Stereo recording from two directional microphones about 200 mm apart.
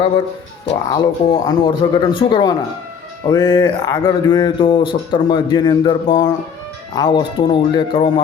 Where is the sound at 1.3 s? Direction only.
20° left (ahead or behind).